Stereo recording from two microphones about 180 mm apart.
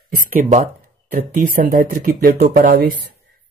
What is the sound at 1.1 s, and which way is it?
Speech, 55° right (ahead or behind).